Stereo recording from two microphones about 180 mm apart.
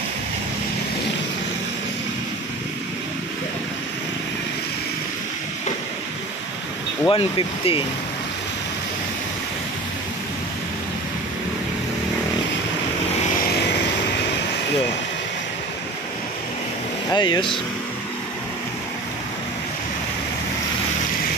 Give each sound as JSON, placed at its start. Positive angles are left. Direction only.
{"t": 7.1, "sound": "speech", "side_deg": 30}
{"t": 17.1, "sound": "speech", "side_deg": 25}